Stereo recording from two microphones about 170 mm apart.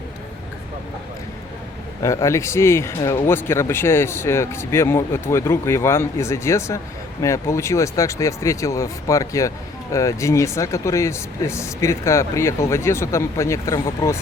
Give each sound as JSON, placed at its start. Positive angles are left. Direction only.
{"t": 2.0, "sound": "speech", "side_deg": 15}